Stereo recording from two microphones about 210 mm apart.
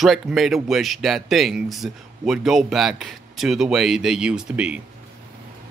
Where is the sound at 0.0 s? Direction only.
Centre (ahead or behind).